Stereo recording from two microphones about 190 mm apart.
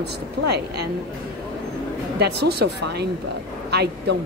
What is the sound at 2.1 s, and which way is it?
A woman's voice, 60° right (ahead or behind).